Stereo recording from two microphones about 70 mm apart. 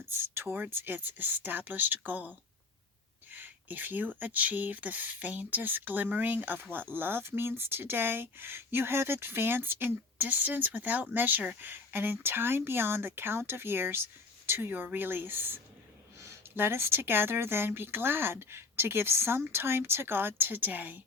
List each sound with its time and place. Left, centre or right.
0.0 s speech: right
16.1 s speech: right